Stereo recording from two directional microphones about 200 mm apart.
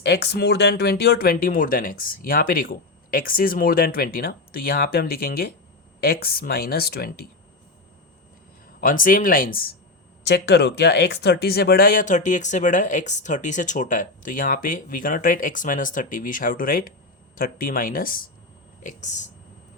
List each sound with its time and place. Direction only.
0.0 s speech: 55° left (ahead or behind)
8.8 s speech: 45° left (ahead or behind)
10.2 s speech: 55° left (ahead or behind); by 19.3 s 35° left (ahead or behind)